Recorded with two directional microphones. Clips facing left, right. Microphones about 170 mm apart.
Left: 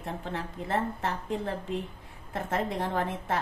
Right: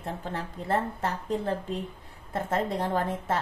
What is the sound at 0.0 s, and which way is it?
A woman's voice, 40° right (ahead or behind).